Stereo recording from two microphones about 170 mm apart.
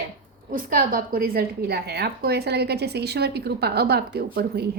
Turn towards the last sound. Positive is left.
turn(degrees=-70)  # may be behind; listen again after turning